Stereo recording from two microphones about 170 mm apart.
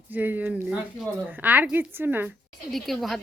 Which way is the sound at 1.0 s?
10° right (ahead or behind).